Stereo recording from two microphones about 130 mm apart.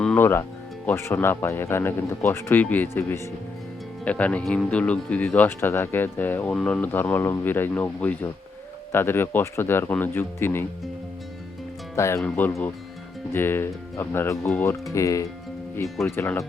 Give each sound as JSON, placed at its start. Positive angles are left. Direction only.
{"t": 0.2, "sound": "speech", "side_deg": 20}
{"t": 11.9, "sound": "speech", "side_deg": 20}
{"t": 13.3, "sound": "speech", "side_deg": 15}